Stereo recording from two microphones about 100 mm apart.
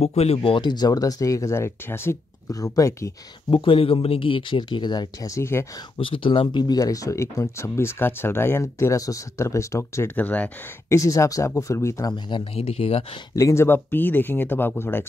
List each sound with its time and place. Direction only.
0.0 s speech: 90° left; by 3.1 s 35° left (ahead or behind)
3.4 s speech: 60° left (ahead or behind)
5.2 s speech: 30° left (ahead or behind)
5.9 s speech: 60° left (ahead or behind); by 10.1 s 30° left (ahead or behind)
10.1 s speech: 15° left (ahead or behind)
10.9 s speech: 35° left (ahead or behind)
12.1 s speech: 50° left (ahead or behind)
12.5 s speech: 80° left
13.3 s speech: 30° left (ahead or behind)